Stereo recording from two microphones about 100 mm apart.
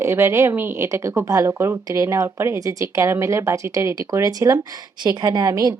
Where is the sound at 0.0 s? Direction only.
25° right (ahead or behind).